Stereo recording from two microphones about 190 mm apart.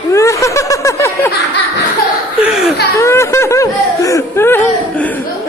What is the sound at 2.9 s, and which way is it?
Laughter, 15° left (ahead or behind).